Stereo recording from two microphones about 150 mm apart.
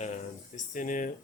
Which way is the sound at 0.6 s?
60° left (ahead or behind).